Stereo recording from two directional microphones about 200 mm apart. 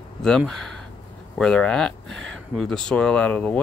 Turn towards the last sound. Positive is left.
turn(degrees=5)  # may be behind; listen again after turning